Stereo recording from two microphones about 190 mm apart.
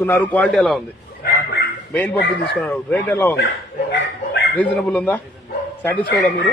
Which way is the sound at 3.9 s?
65° left (ahead or behind).